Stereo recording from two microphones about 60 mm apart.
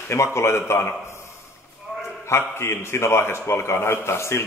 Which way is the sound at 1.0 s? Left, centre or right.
Left.